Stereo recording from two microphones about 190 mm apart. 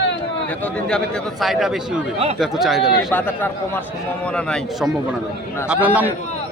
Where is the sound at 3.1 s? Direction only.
10° left (ahead or behind); by 6.1 s 10° right (ahead or behind).